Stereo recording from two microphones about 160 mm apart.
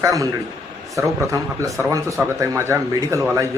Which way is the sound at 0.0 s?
20° right (ahead or behind).